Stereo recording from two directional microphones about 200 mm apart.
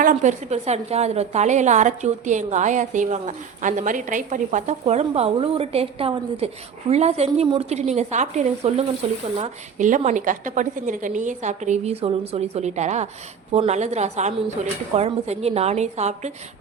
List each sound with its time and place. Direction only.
0.0 s a woman's voice: 40° right (ahead or behind)